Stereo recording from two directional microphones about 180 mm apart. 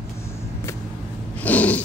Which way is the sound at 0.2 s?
15° left (ahead or behind).